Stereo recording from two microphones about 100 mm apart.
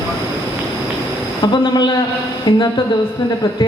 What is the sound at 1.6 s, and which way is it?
A woman's voice, 45° left (ahead or behind).